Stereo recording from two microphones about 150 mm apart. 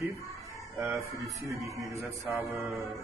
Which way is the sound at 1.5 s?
20° right (ahead or behind).